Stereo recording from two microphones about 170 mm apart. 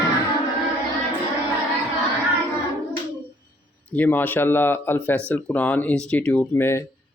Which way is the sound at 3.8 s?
10° left (ahead or behind).